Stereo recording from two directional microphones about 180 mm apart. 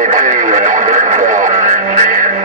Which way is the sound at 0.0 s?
45° right (ahead or behind).